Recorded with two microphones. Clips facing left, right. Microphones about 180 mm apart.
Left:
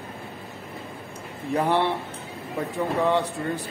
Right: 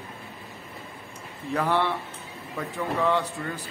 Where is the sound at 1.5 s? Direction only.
20° left (ahead or behind).